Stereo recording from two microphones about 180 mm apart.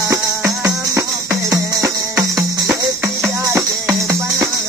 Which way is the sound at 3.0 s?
15° right (ahead or behind).